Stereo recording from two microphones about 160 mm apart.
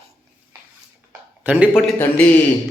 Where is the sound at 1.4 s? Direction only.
10° right (ahead or behind).